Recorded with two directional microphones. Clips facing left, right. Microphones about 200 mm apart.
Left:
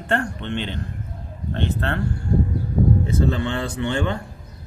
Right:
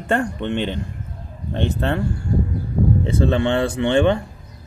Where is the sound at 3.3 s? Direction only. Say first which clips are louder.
Right 5 dB; 75° right (ahead or behind).